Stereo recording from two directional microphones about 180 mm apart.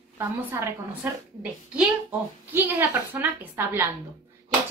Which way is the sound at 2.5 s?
10° right (ahead or behind).